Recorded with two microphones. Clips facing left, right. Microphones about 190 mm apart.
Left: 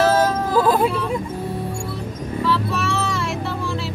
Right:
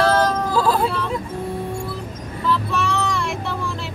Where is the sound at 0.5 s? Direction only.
15° left (ahead or behind).